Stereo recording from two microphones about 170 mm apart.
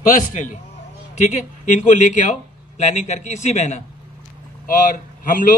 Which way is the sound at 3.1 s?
45° left (ahead or behind).